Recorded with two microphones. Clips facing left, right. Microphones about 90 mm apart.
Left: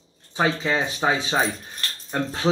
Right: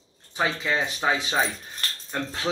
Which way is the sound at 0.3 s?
25° left (ahead or behind).